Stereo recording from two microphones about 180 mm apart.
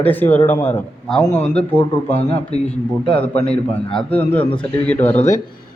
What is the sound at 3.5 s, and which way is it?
Speech, 5° left (ahead or behind).